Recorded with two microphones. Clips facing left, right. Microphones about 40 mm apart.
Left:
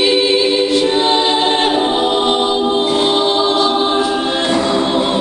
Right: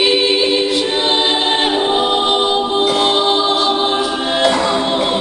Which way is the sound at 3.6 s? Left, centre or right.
Centre.